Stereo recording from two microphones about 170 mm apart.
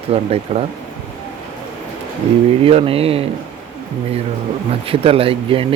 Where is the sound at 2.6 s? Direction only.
35° right (ahead or behind).